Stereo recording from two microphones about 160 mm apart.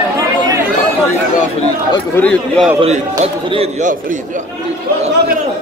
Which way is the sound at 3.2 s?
40° right (ahead or behind).